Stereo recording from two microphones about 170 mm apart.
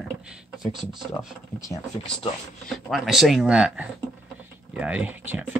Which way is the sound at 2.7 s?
Centre (ahead or behind).